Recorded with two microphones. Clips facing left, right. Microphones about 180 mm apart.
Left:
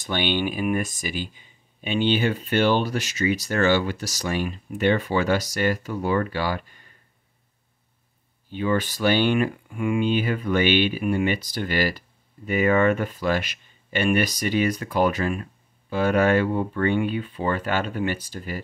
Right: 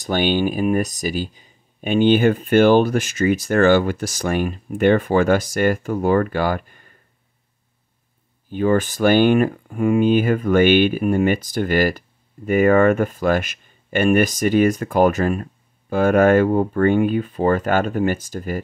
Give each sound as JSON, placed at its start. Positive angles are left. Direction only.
{"t": 0.0, "sound": "speech", "side_deg": -45}
{"t": 8.5, "sound": "speech", "side_deg": -45}